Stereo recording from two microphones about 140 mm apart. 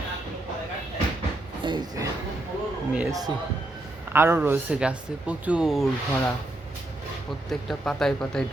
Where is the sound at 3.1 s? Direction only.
25° right (ahead or behind).